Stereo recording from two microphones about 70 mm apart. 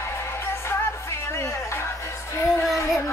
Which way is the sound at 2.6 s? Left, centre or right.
Centre.